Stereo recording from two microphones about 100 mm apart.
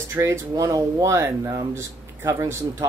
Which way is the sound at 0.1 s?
30° right (ahead or behind).